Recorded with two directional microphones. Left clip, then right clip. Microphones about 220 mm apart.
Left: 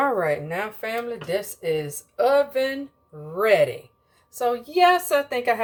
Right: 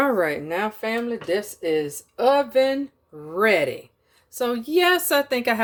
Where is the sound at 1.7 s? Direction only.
40° right (ahead or behind).